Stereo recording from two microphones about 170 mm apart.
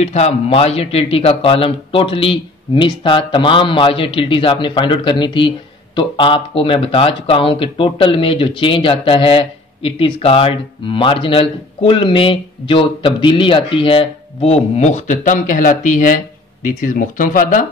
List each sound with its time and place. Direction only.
0.0 s speech: 40° left (ahead or behind)